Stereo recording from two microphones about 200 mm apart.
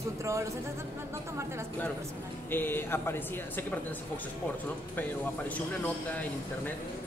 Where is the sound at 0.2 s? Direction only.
15° right (ahead or behind).